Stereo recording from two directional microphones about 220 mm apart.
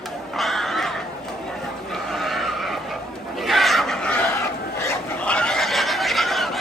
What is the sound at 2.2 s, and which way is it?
Neigh, centre (ahead or behind).